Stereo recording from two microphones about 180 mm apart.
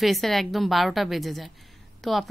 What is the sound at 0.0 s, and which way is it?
Speech, centre (ahead or behind).